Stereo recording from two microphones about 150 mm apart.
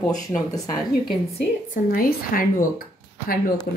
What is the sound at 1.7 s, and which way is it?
Speech, 75° left (ahead or behind).